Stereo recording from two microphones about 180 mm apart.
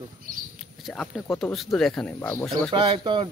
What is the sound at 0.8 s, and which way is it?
Speech, centre (ahead or behind).